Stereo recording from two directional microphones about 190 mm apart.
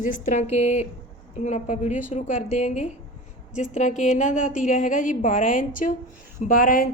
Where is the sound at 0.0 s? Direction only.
40° left (ahead or behind).